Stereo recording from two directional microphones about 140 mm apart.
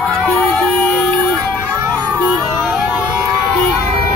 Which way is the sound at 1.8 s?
10° right (ahead or behind).